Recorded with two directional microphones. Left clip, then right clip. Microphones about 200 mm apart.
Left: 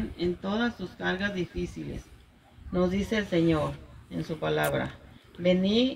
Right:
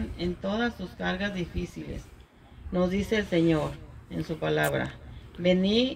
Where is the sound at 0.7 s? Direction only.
35° right (ahead or behind).